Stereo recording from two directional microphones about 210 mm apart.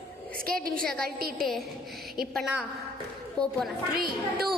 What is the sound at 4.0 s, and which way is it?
Speech, 45° right (ahead or behind).